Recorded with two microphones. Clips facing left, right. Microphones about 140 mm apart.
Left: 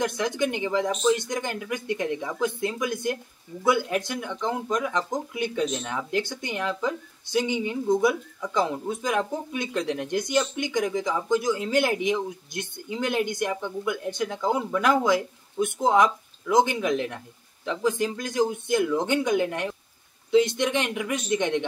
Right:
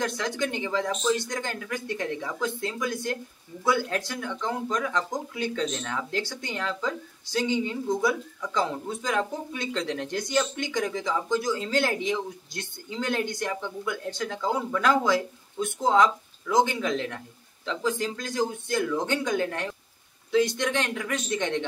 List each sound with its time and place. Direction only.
0.2 s a man's voice: 20° left (ahead or behind)